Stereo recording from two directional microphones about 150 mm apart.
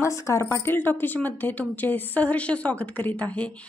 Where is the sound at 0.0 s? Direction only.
20° left (ahead or behind).